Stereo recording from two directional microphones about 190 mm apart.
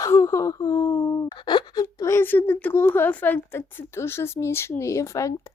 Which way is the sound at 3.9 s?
15° left (ahead or behind).